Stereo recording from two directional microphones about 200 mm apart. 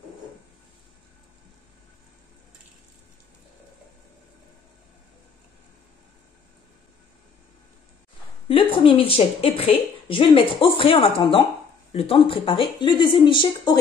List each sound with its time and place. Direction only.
8.5 s a woman's voice: 25° left (ahead or behind)